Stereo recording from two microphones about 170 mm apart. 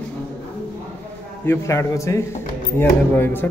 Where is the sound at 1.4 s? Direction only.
15° left (ahead or behind).